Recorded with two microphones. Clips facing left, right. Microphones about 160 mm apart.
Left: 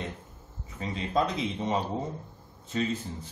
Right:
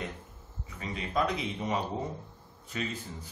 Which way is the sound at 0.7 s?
30° left (ahead or behind).